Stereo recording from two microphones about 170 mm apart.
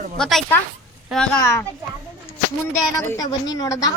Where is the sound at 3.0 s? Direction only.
20° left (ahead or behind).